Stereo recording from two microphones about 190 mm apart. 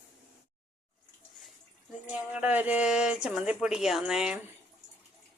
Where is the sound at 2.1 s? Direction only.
5° right (ahead or behind).